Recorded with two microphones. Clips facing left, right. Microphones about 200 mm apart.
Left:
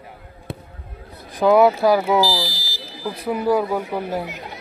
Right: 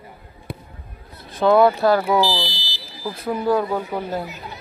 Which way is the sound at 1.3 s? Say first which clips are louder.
Left 1 dB; 10° left (ahead or behind).